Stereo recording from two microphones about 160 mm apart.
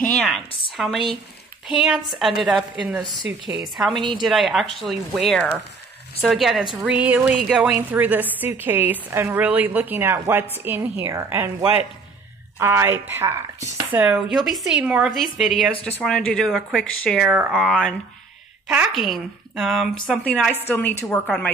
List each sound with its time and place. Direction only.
0.1 s speech: centre (ahead or behind)
3.9 s a woman's voice: 30° right (ahead or behind)
4.2 s a woman's voice: centre (ahead or behind); by 11.5 s 15° right (ahead or behind)
12.5 s a woman's voice: 15° right (ahead or behind); by 21.5 s 5° left (ahead or behind)